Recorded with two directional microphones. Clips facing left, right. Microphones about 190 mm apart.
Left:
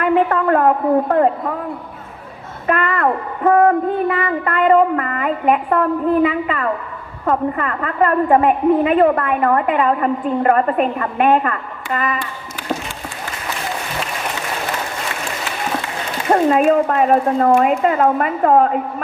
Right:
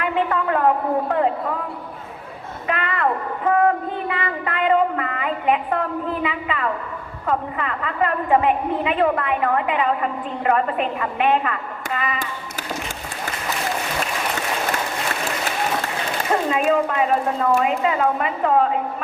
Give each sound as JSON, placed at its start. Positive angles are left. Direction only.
{"t": 0.0, "sound": "a woman's voice", "side_deg": 45}
{"t": 2.6, "sound": "a woman's voice", "side_deg": 45}
{"t": 16.3, "sound": "a woman's voice", "side_deg": 45}